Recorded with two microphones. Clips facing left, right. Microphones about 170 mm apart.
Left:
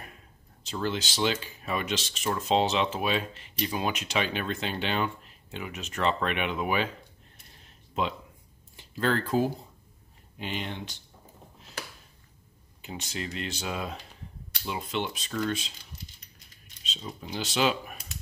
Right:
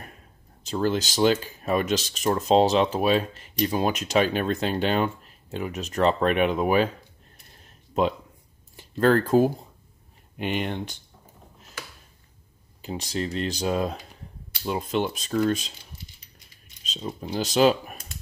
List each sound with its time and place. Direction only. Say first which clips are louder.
0.7 s speech: right 6 dB; 40° right (ahead or behind)
8.0 s speech: right 7 dB; 40° right (ahead or behind)
12.8 s speech: right 7 dB; 35° right (ahead or behind)
16.8 s speech: right 6 dB; 40° right (ahead or behind)